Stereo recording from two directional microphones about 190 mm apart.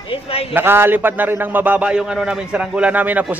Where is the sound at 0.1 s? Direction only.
30° left (ahead or behind).